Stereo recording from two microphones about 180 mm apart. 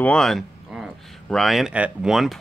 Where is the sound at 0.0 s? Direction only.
5° left (ahead or behind).